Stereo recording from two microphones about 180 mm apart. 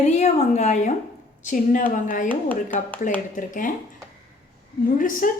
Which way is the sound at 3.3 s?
45° left (ahead or behind).